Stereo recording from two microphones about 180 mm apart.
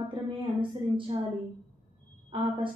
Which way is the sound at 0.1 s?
30° right (ahead or behind).